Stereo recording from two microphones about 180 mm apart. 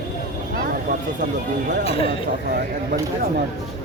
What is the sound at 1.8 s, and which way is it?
Speech, 30° left (ahead or behind).